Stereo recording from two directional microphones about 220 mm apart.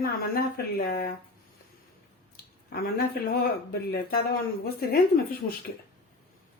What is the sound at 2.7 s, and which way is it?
Speech, 45° left (ahead or behind).